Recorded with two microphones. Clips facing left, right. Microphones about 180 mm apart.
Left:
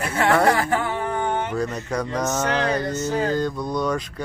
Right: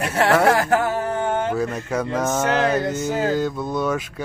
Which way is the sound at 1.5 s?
5° right (ahead or behind).